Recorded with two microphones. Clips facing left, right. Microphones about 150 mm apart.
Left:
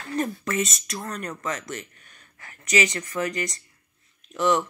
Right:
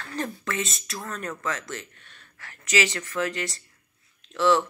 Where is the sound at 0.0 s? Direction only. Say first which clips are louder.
Left 4 dB; centre (ahead or behind).